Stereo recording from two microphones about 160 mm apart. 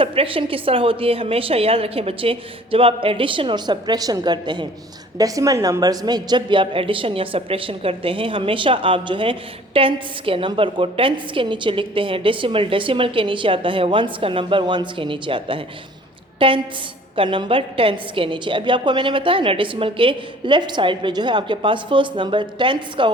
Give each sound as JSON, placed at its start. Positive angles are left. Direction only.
{"t": 0.0, "sound": "a woman's voice", "side_deg": -35}